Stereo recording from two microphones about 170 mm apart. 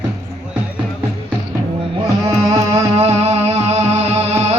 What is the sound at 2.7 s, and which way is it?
Music, 40° right (ahead or behind).